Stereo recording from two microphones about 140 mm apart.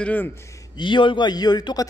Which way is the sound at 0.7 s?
35° left (ahead or behind).